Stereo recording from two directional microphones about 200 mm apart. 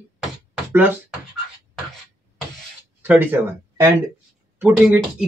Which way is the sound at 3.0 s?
10° right (ahead or behind).